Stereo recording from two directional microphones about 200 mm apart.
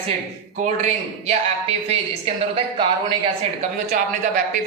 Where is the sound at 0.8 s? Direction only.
35° right (ahead or behind).